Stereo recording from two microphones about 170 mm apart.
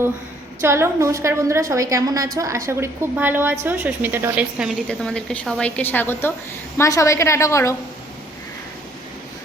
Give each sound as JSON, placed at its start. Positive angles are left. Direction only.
{"t": 0.6, "sound": "a woman's voice", "side_deg": -15}
{"t": 4.9, "sound": "a woman's voice", "side_deg": 5}